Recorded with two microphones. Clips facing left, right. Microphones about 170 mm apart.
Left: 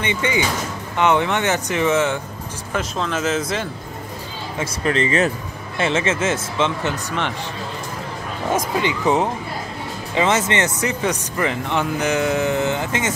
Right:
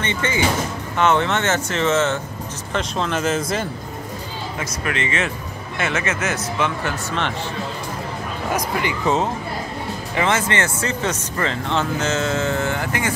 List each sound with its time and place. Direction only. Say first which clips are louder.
0.0 s speech: even; 15° left (ahead or behind)
2.7 s speech: right 1 dB; centre (ahead or behind)
4.6 s speech: left 6 dB; 30° left (ahead or behind); by 7.3 s 15° left (ahead or behind)
8.5 s speech: left 2 dB; 20° left (ahead or behind)